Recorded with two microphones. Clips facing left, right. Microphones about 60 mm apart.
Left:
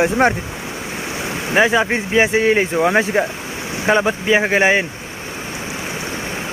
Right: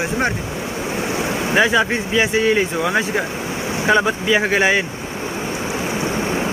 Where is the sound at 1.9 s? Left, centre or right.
Left.